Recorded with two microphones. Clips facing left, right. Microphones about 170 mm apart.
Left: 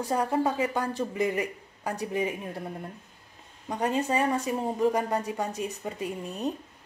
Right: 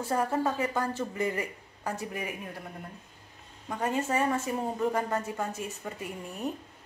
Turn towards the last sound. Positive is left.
turn(degrees=20)  # may be behind; listen again after turning